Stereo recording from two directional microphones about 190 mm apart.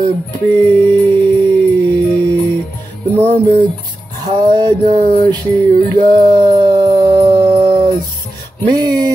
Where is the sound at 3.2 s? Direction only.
25° right (ahead or behind).